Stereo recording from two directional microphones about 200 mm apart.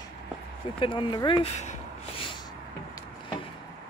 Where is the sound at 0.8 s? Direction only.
25° left (ahead or behind).